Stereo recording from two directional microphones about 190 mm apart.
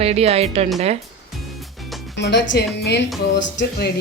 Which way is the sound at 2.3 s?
65° left (ahead or behind).